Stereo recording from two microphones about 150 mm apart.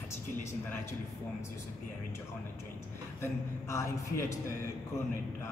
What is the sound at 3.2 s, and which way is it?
A man's voice, 20° left (ahead or behind).